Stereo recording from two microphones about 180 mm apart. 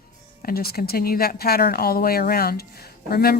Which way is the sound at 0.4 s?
55° left (ahead or behind).